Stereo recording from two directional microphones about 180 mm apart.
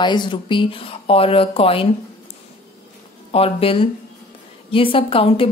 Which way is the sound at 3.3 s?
30° left (ahead or behind).